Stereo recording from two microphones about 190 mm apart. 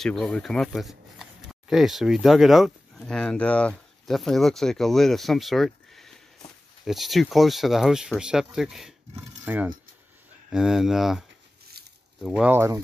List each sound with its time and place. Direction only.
0.0 s speech: centre (ahead or behind)
9.1 s coin: 10° right (ahead or behind)
10.5 s speech: centre (ahead or behind)
12.4 s coin: 15° right (ahead or behind)